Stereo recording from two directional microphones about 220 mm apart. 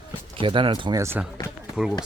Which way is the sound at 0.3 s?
25° right (ahead or behind).